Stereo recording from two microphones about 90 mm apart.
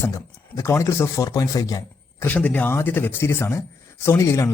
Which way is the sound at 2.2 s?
15° left (ahead or behind).